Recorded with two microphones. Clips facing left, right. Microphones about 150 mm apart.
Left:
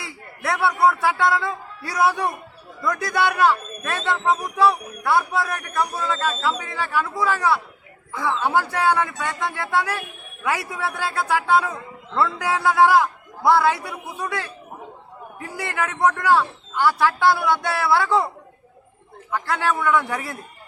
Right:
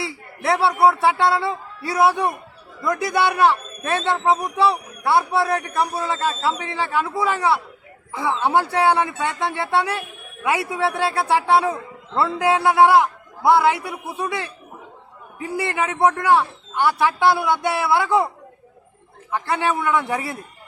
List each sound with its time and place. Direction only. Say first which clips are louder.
0.0 s a man's voice: right 5 dB; 30° right (ahead or behind)
19.3 s a man's voice: right 1 dB; 20° right (ahead or behind)